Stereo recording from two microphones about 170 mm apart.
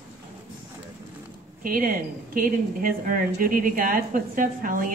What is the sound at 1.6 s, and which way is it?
A woman's voice, 55° right (ahead or behind).